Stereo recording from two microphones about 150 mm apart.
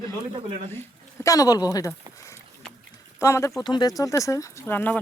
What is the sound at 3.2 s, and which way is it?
Speech, 20° left (ahead or behind).